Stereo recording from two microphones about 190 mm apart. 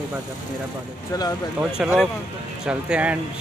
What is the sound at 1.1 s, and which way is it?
Speech, 20° left (ahead or behind).